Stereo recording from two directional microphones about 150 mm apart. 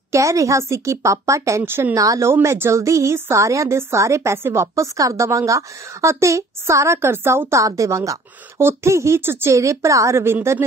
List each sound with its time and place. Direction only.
0.1 s a woman's voice: 20° right (ahead or behind)